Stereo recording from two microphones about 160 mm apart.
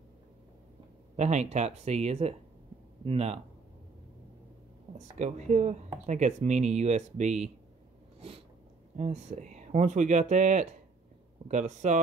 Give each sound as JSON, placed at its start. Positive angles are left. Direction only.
{"t": 1.1, "sound": "speech", "side_deg": -45}
{"t": 4.9, "sound": "speech", "side_deg": -45}
{"t": 8.9, "sound": "speech", "side_deg": -45}